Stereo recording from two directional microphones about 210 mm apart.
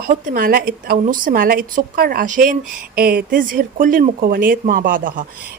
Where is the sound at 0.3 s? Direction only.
45° right (ahead or behind).